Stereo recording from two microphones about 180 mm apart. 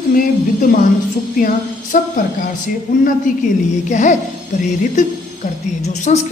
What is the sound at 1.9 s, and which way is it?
Speech, 50° left (ahead or behind).